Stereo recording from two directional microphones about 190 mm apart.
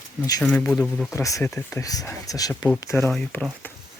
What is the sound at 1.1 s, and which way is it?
Speech, 15° left (ahead or behind).